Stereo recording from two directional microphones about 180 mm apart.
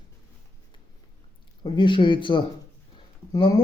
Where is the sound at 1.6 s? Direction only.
25° left (ahead or behind).